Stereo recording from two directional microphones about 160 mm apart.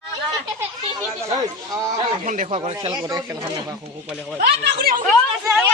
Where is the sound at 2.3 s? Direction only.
45° right (ahead or behind).